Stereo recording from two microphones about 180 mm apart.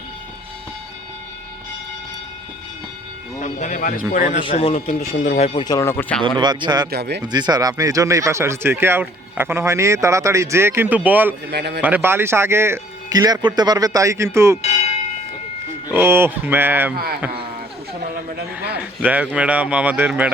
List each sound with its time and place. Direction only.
3.4 s speech: 45° left (ahead or behind)
4.4 s speech: 35° left (ahead or behind)
5.6 s speech: 15° left (ahead or behind)
6.4 s a man's voice: 25° right (ahead or behind)
6.9 s a man's voice: 65° right (ahead or behind)
7.3 s speech: 25° right (ahead or behind)
11.5 s a man's voice: 65° right (ahead or behind)
11.8 s speech: 10° right (ahead or behind)
15.9 s speech: 15° right (ahead or behind)
18.3 s a man's voice: 65° right (ahead or behind)
19.0 s speech: 5° right (ahead or behind)